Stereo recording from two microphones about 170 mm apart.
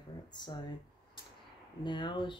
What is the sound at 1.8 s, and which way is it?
Speech, 25° left (ahead or behind).